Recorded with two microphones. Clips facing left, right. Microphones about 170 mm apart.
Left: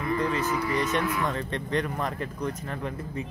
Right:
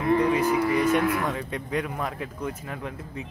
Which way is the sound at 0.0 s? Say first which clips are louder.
Right 5 dB; 65° right (ahead or behind).